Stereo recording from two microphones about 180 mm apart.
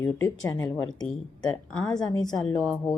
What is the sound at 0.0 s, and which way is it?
Speech, 15° left (ahead or behind).